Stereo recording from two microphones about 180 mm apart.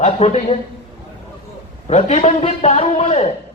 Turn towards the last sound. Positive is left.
turn(degrees=35)  # may be behind; listen again after turning